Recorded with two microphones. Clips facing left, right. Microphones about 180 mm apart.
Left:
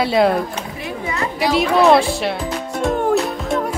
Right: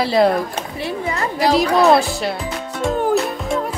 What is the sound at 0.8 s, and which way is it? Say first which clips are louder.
Speech: right 2 dB; 35° right (ahead or behind).